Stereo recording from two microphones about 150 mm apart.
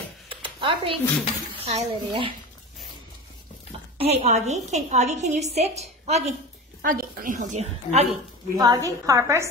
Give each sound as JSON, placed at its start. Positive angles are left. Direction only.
{"t": 0.3, "sound": "a sound", "side_deg": -35}
{"t": 1.6, "sound": "a child's voice", "side_deg": -40}
{"t": 4.0, "sound": "a woman's voice", "side_deg": -45}
{"t": 6.8, "sound": "a woman's voice", "side_deg": -70}
{"t": 8.5, "sound": "a woman's voice", "side_deg": -25}